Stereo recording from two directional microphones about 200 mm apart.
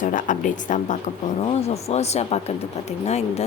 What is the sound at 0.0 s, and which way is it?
Speech, 40° left (ahead or behind).